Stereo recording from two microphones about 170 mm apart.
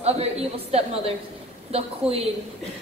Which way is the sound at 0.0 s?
40° right (ahead or behind).